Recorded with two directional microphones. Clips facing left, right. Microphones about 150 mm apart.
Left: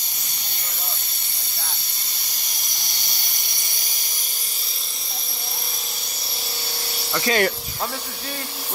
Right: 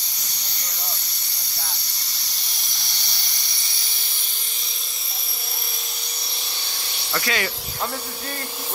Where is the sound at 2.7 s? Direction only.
45° left (ahead or behind).